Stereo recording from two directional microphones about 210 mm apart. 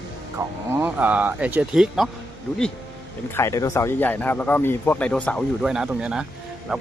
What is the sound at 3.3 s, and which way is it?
Speech, 15° left (ahead or behind).